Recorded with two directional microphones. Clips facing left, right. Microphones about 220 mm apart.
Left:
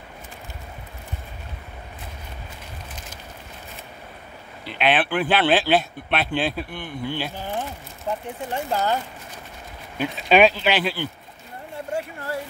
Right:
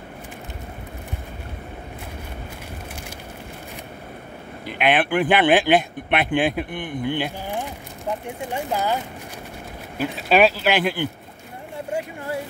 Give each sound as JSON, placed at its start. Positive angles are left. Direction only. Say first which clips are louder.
{"t": 4.6, "sound": "speech", "louder": "right 1 dB", "side_deg": -15}
{"t": 9.9, "sound": "speech", "louder": "even", "side_deg": -5}